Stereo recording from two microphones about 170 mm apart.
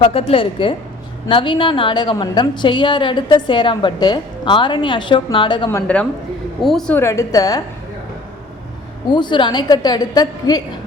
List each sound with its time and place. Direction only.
0.0 s a woman's voice: 35° left (ahead or behind)
6.6 s speech: centre (ahead or behind)
7.0 s a woman's voice: 20° left (ahead or behind)
9.0 s a woman's voice: 25° left (ahead or behind)